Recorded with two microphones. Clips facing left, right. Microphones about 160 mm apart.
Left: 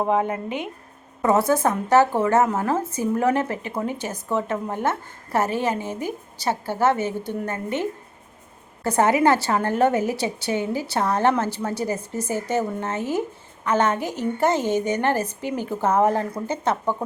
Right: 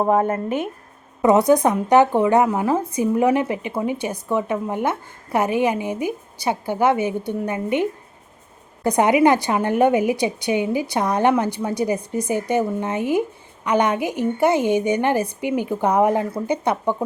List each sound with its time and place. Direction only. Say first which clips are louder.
0.4 s speech: right 5 dB; 20° left (ahead or behind)
1.2 s a woman's voice: right 4 dB; 15° right (ahead or behind)